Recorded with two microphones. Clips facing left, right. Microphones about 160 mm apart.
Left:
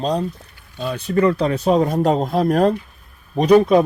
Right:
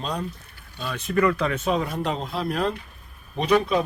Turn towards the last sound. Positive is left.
turn(degrees=45)  # may be behind; listen again after turning